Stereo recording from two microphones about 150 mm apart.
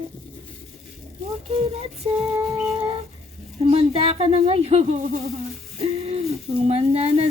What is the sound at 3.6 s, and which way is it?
Speech, 40° right (ahead or behind).